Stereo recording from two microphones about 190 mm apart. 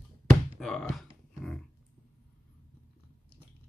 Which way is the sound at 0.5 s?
Centre (ahead or behind).